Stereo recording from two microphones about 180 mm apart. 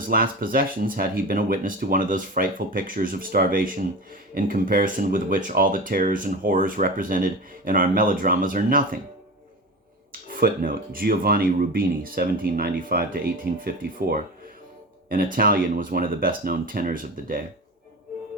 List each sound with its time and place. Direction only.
0.1 s speech: 55° right (ahead or behind)
10.1 s speech: 55° right (ahead or behind)